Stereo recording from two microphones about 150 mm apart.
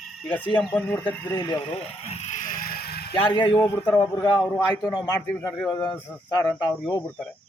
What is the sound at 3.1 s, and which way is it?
A man's voice, 35° left (ahead or behind).